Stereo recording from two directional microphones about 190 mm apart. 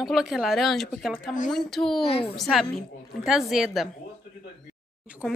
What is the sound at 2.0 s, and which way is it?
Speech, 30° left (ahead or behind).